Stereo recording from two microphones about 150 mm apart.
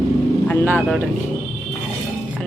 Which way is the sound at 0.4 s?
10° left (ahead or behind).